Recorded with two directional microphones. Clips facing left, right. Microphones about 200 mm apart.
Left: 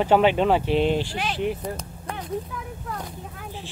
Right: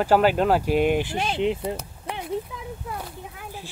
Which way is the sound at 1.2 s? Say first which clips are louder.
Right 2 dB; 25° right (ahead or behind).